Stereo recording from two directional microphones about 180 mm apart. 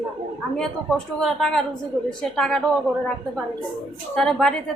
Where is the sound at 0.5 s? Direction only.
5° left (ahead or behind).